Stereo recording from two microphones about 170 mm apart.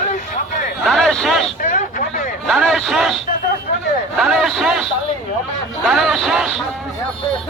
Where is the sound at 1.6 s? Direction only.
50° left (ahead or behind).